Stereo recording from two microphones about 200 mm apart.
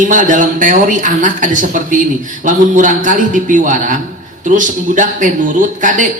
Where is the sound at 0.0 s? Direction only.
40° right (ahead or behind).